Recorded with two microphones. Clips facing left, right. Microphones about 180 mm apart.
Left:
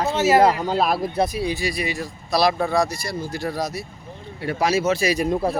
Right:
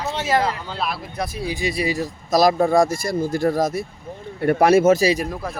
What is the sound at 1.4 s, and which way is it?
Speech, 15° right (ahead or behind).